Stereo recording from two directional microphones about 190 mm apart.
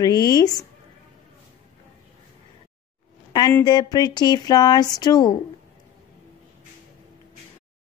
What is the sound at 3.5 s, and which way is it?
Speech, 20° left (ahead or behind).